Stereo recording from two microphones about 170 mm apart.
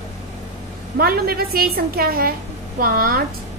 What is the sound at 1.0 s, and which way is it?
A woman's voice, 65° right (ahead or behind).